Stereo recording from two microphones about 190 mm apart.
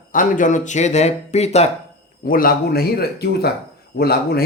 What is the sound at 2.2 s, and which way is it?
Speech, 50° left (ahead or behind).